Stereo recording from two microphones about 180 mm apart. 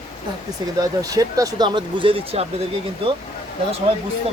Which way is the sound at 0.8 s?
20° right (ahead or behind).